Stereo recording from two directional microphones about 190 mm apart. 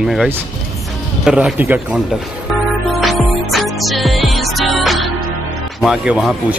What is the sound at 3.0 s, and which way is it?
Music, centre (ahead or behind).